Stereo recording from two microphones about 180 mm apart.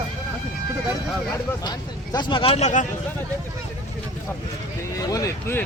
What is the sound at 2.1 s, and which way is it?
Speech, 25° left (ahead or behind).